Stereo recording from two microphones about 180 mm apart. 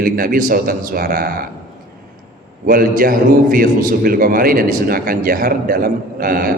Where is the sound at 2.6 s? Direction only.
55° right (ahead or behind).